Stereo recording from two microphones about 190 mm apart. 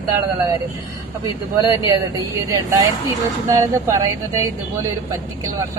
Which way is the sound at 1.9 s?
20° right (ahead or behind).